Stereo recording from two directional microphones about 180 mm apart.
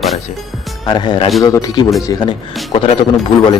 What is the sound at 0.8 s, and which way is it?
Speech, 25° left (ahead or behind).